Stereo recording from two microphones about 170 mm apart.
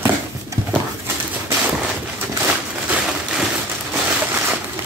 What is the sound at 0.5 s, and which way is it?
Horse, 20° right (ahead or behind).